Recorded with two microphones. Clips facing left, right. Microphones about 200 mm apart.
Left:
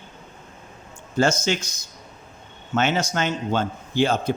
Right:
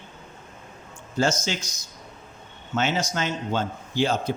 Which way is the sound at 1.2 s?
55° left (ahead or behind).